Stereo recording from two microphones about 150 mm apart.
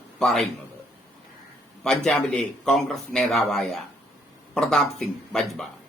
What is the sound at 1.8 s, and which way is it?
Speech, 5° left (ahead or behind).